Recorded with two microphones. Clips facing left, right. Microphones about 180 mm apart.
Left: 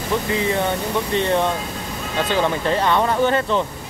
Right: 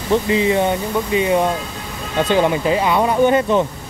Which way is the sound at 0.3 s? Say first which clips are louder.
Right 3 dB; 15° right (ahead or behind).